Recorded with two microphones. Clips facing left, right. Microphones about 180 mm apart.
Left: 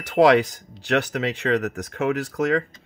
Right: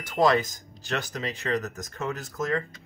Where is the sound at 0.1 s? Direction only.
75° left (ahead or behind).